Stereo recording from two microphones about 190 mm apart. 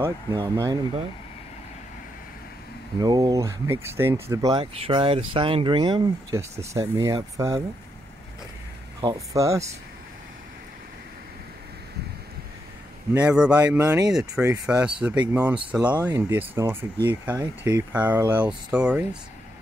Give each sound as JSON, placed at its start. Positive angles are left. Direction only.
{"t": 0.0, "sound": "speech", "side_deg": -20}
{"t": 3.0, "sound": "speech", "side_deg": -20}
{"t": 9.0, "sound": "speech", "side_deg": -15}
{"t": 13.1, "sound": "speech", "side_deg": -5}